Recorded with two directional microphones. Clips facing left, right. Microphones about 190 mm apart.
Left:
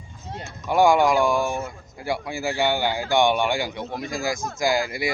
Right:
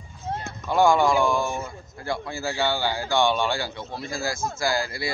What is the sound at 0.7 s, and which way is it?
A man's voice, 15° left (ahead or behind).